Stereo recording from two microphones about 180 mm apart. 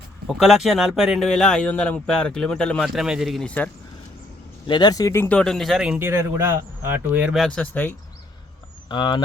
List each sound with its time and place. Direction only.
0.3 s speech: 5° right (ahead or behind)
4.6 s speech: 25° left (ahead or behind)
8.9 s speech: 25° left (ahead or behind)